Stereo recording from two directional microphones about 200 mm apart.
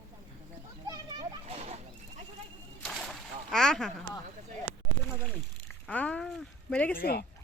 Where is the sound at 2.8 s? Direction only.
Centre (ahead or behind).